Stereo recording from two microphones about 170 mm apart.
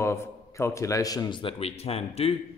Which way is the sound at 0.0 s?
15° left (ahead or behind).